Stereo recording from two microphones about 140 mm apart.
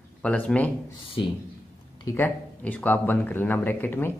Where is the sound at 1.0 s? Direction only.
40° left (ahead or behind).